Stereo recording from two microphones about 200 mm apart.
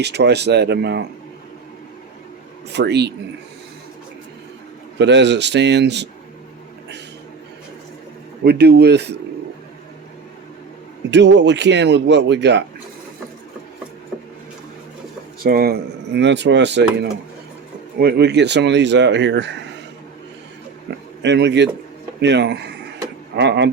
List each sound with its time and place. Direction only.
0.0 s speech: 55° right (ahead or behind)
2.7 s speech: 55° right (ahead or behind)
4.9 s speech: 60° right (ahead or behind)
8.4 s speech: 55° right (ahead or behind)
11.1 s speech: 60° right (ahead or behind)
15.4 s speech: 50° right (ahead or behind)
21.2 s speech: 60° right (ahead or behind)